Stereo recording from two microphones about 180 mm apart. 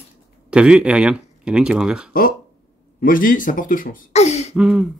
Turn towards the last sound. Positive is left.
turn(degrees=-5)  # may be behind; listen again after turning